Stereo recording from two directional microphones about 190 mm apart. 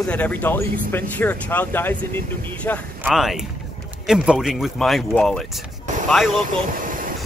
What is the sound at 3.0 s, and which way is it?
Speech, centre (ahead or behind).